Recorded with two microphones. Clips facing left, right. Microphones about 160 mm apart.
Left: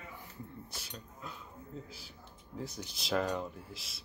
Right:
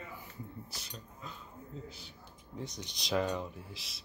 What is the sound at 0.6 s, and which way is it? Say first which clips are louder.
Speech: left 1 dB; centre (ahead or behind).